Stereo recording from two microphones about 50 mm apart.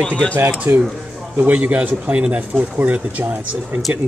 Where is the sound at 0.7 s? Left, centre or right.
Right.